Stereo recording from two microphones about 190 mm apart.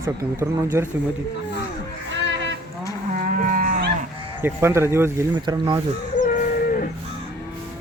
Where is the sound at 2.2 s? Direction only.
70° right (ahead or behind).